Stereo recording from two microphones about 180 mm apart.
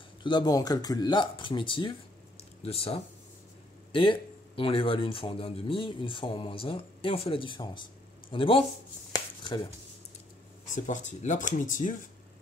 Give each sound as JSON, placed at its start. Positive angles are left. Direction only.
{"t": 0.2, "sound": "speech", "side_deg": 25}
{"t": 9.1, "sound": "a sound", "side_deg": 25}
{"t": 10.7, "sound": "speech", "side_deg": 45}